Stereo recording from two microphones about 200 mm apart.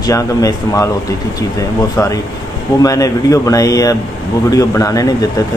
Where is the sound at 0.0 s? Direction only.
15° left (ahead or behind).